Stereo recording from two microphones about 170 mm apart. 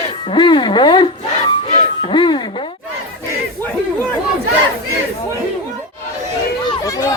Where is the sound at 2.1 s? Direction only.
30° left (ahead or behind).